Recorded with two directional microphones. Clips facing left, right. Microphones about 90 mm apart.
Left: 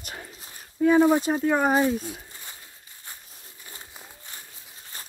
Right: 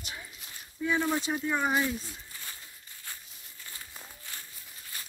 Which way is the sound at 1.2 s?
40° left (ahead or behind).